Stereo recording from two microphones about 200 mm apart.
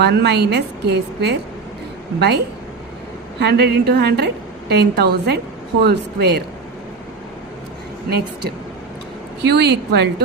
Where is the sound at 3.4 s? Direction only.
55° right (ahead or behind).